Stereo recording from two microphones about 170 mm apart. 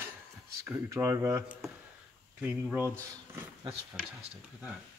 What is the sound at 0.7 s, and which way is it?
Speech, 15° right (ahead or behind).